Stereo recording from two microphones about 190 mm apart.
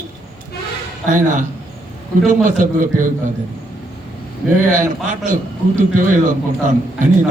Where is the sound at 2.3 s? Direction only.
45° right (ahead or behind).